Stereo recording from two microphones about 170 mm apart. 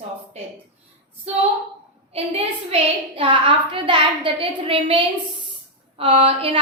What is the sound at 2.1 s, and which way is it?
A woman's voice, 35° right (ahead or behind).